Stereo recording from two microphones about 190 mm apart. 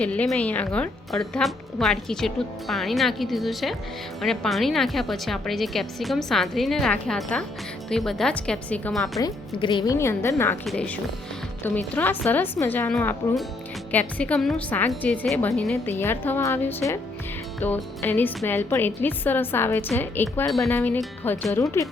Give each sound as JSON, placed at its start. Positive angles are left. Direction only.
{"t": 0.0, "sound": "a woman's voice", "side_deg": 5}
{"t": 9.1, "sound": "a woman's voice", "side_deg": 20}
{"t": 21.5, "sound": "a woman's voice", "side_deg": 15}